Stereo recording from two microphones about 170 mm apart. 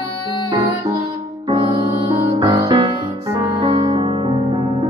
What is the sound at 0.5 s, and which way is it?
Music, 25° right (ahead or behind).